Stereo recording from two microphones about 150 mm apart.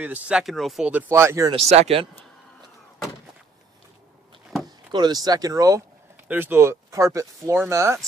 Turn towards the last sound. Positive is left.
turn(degrees=-20)  # may be behind; listen again after turning